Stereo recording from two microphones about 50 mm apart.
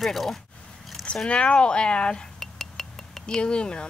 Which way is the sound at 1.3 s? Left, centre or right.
Left.